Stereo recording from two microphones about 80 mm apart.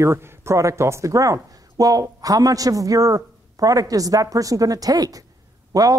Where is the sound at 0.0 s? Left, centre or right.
Right.